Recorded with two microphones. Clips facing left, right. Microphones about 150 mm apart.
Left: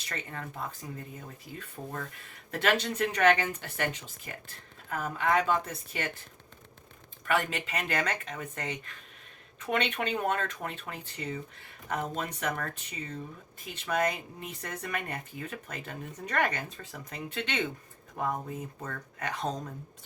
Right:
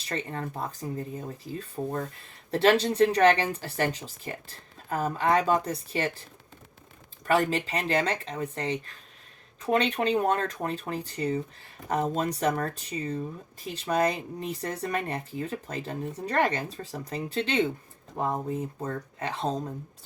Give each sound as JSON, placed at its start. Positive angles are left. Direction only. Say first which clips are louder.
{"t": 0.0, "sound": "speech", "louder": "right 7 dB", "side_deg": -30}
{"t": 7.3, "sound": "speech", "louder": "right 5 dB", "side_deg": -30}